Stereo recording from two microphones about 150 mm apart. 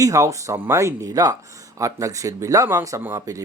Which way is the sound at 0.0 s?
20° right (ahead or behind).